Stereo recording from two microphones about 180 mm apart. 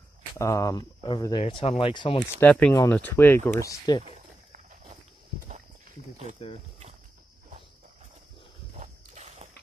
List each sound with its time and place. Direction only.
0.4 s speech: 20° left (ahead or behind)
2.2 s speech: 10° left (ahead or behind)
4.0 s a sound: 40° right (ahead or behind)
8.7 s walk: 40° right (ahead or behind)